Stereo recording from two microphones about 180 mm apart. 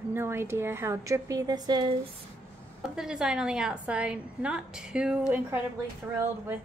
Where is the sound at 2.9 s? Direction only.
5° right (ahead or behind).